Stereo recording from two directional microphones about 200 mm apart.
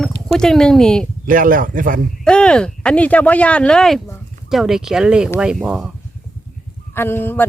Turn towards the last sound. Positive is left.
turn(degrees=10)  # may be behind; listen again after turning